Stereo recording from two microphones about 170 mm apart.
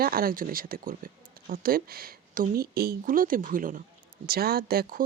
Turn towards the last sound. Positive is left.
turn(degrees=-60)  # may be behind; listen again after turning